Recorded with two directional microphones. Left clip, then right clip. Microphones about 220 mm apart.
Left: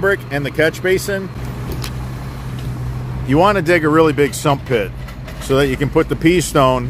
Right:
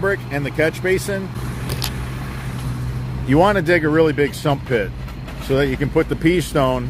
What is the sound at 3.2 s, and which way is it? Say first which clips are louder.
Speech: left 2 dB; 5° left (ahead or behind).